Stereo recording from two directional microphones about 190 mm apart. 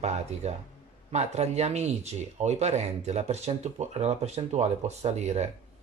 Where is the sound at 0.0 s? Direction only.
35° right (ahead or behind).